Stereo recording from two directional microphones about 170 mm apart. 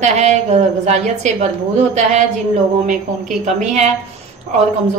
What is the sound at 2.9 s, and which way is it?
A woman's voice, 45° right (ahead or behind).